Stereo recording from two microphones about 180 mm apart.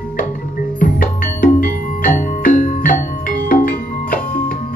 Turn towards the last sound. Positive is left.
turn(degrees=50)  # may be behind; listen again after turning